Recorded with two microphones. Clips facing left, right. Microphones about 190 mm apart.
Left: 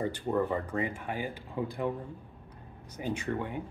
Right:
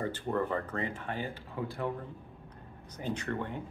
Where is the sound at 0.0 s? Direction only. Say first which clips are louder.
Left 2 dB; 15° left (ahead or behind).